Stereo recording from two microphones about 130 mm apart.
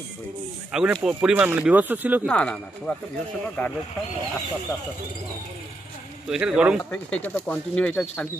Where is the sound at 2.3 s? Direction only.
10° left (ahead or behind).